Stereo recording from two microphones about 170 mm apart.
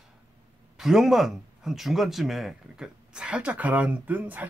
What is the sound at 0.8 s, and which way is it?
Speech, centre (ahead or behind).